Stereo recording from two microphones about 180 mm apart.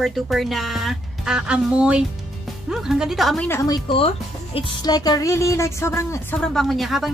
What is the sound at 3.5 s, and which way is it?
Speech, 20° left (ahead or behind).